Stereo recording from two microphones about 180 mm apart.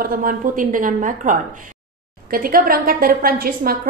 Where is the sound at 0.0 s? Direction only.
50° right (ahead or behind).